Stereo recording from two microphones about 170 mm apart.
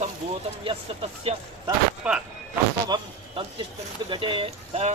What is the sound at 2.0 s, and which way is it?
Speech, 5° right (ahead or behind).